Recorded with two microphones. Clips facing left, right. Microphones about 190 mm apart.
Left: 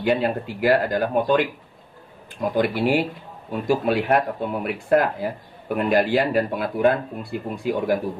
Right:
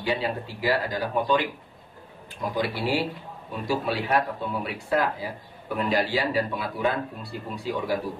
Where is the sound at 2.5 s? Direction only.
50° left (ahead or behind).